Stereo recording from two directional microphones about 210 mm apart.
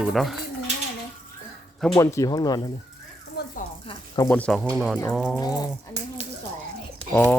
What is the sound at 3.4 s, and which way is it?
Speech, 50° left (ahead or behind).